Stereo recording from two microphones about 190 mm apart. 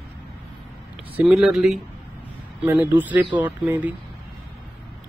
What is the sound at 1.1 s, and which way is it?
Speech, 5° right (ahead or behind).